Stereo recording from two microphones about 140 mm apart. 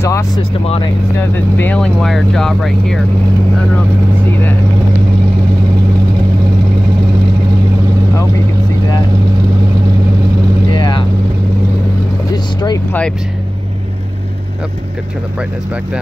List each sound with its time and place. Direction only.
0.0 s speech: 20° left (ahead or behind)
0.4 s speech: 40° left (ahead or behind)
1.6 s speech: 10° left (ahead or behind)
10.7 s vehicle: 30° left (ahead or behind)
12.5 s vehicle: 30° left (ahead or behind)